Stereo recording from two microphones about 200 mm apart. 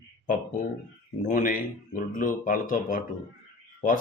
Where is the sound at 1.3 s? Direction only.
45° left (ahead or behind).